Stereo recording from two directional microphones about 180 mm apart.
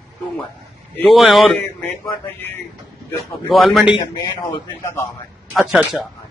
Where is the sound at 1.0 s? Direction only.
Centre (ahead or behind).